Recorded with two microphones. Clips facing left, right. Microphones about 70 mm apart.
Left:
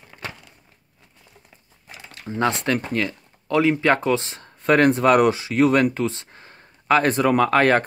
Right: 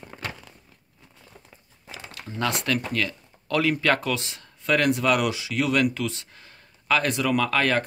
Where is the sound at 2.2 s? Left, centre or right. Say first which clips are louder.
Left 5 dB; left.